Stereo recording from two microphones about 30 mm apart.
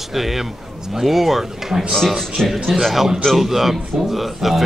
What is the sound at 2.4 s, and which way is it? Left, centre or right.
Speech, centre.